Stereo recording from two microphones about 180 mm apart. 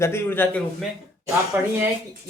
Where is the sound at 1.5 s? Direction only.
10° right (ahead or behind).